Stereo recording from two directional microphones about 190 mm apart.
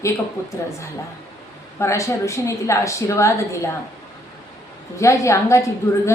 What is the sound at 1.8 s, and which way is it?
A woman's voice, 15° left (ahead or behind).